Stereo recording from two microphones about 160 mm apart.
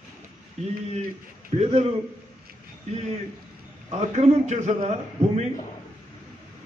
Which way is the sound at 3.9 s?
40° right (ahead or behind).